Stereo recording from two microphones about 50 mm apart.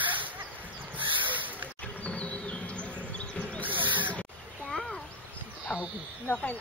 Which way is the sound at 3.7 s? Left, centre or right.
Right.